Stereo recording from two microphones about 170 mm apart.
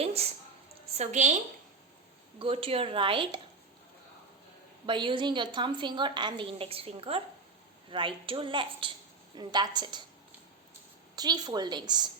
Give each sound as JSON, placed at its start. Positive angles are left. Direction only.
{"t": 0.0, "sound": "a woman's voice", "side_deg": -35}
{"t": 2.4, "sound": "speech", "side_deg": -30}
{"t": 4.9, "sound": "a woman's voice", "side_deg": -30}
{"t": 11.1, "sound": "a woman's voice", "side_deg": -25}